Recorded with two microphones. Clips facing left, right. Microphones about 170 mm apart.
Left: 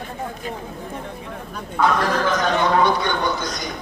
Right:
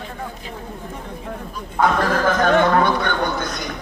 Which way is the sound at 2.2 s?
50° right (ahead or behind).